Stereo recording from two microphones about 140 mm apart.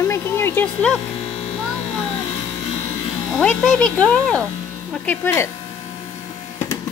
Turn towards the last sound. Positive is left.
turn(degrees=15)  # may be behind; listen again after turning